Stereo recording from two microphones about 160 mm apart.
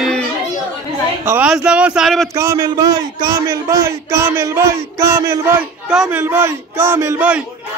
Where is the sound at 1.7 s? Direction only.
5° right (ahead or behind).